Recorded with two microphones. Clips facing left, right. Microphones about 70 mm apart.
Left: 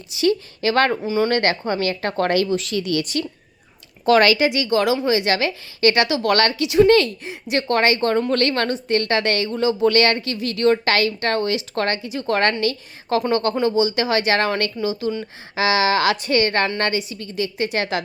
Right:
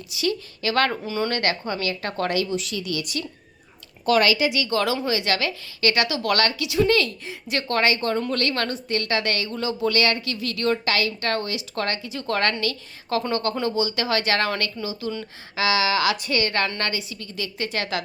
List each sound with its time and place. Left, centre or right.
0.2 s a woman's voice: left
1.0 s speech: centre
1.3 s a woman's voice: left
4.4 s a woman's voice: left
7.3 s a woman's voice: left
9.5 s a woman's voice: left
9.9 s a woman's voice: left
10.4 s a woman's voice: left
10.8 s a woman's voice: left
11.2 s a woman's voice: left
12.0 s a woman's voice: left